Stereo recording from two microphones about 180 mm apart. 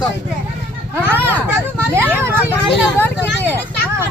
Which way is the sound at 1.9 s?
10° right (ahead or behind).